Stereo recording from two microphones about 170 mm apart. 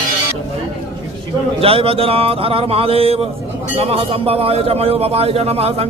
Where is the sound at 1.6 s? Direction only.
35° right (ahead or behind).